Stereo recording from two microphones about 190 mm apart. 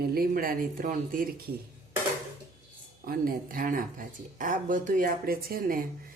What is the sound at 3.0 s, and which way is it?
Speech, 50° right (ahead or behind).